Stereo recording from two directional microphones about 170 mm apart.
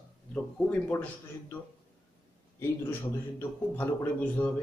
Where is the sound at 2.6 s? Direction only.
15° left (ahead or behind).